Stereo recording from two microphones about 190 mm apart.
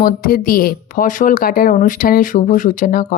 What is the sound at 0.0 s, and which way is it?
Speech, 50° left (ahead or behind).